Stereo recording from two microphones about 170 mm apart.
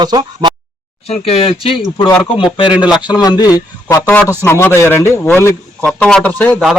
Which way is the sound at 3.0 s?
25° left (ahead or behind).